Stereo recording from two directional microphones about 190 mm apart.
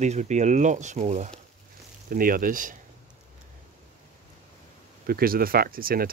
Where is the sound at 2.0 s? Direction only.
50° right (ahead or behind).